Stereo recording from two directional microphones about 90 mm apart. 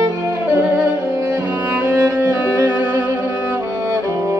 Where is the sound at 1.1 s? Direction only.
40° right (ahead or behind).